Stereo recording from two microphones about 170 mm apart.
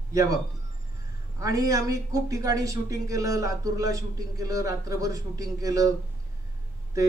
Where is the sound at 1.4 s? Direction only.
20° right (ahead or behind).